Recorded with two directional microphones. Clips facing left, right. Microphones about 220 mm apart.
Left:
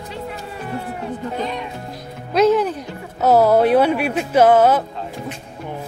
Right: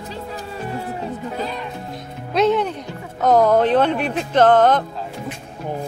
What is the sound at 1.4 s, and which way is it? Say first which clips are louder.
Speech: left 1 dB; centre (ahead or behind).